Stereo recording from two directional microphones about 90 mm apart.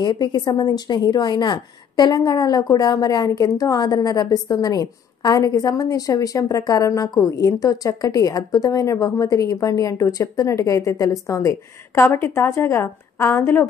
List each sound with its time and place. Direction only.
0.0 s a woman's voice: 55° left (ahead or behind); by 13.7 s 25° left (ahead or behind)